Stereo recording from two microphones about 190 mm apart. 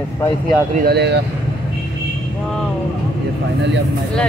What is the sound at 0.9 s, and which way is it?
Speech, 60° right (ahead or behind).